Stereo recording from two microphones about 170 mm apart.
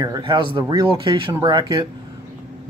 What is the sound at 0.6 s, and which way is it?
Speech, 25° right (ahead or behind).